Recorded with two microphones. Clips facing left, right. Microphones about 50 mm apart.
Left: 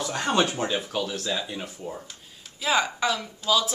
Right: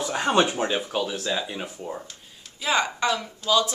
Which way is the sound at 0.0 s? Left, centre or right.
Centre.